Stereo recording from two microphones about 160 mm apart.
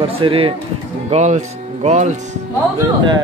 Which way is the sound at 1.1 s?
45° right (ahead or behind).